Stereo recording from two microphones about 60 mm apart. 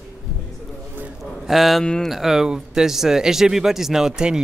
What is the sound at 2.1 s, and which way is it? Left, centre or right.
Speech, centre.